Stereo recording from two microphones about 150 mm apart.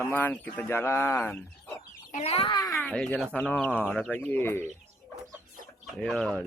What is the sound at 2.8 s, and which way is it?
Speech, 10° left (ahead or behind).